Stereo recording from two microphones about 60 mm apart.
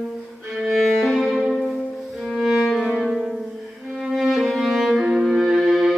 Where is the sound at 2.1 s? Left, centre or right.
Centre.